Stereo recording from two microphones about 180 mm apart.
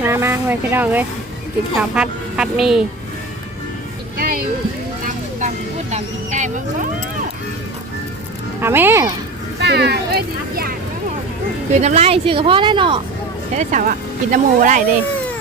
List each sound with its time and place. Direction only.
0.0 s speech: 15° right (ahead or behind)
4.2 s music: 50° right (ahead or behind)
5.9 s a sound: 40° right (ahead or behind)
8.6 s speech: 10° right (ahead or behind)
9.6 s vehicle: 70° right (ahead or behind)
11.8 s speech: 35° right (ahead or behind)
13.6 s speech: 45° right (ahead or behind)